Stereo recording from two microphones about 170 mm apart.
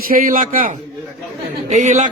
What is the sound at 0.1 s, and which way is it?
Speech, 55° right (ahead or behind).